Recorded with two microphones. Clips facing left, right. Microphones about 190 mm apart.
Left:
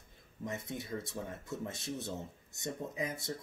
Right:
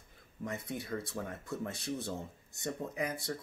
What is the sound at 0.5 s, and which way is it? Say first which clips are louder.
Speech: right 1 dB; 20° left (ahead or behind).